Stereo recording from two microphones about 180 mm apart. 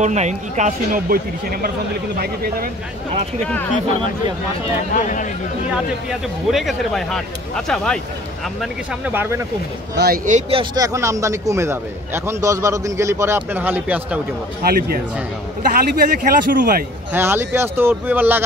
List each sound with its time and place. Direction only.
0.0 s speech: 40° right (ahead or behind); by 2.7 s 55° right (ahead or behind)
4.9 s speech: 45° left (ahead or behind)
6.0 s speech: centre (ahead or behind)
8.5 s a man's voice: 10° right (ahead or behind)
9.9 s speech: 55° right (ahead or behind)
10.5 s a man's voice: 25° right (ahead or behind); by 14.2 s 10° right (ahead or behind)
14.6 s speech: 55° right (ahead or behind)
17.1 s a man's voice: 15° right (ahead or behind)